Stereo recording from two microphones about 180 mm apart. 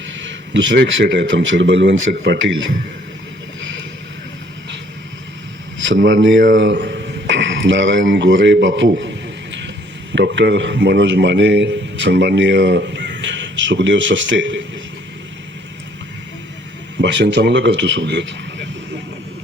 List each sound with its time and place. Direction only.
0.2 s a man's voice: 90° right
6.6 s a sound: 80° right
10.1 s a man's voice: 85° right
17.0 s a man's voice: 80° right